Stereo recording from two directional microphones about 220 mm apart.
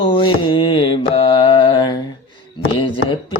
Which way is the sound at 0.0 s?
20° left (ahead or behind).